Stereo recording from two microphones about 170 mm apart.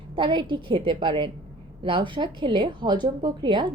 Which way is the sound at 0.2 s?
30° right (ahead or behind).